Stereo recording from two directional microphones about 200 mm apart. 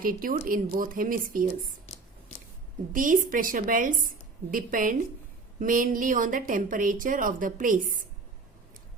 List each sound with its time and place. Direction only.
0.0 s a woman's voice: 45° right (ahead or behind)
2.9 s a woman's voice: 40° right (ahead or behind)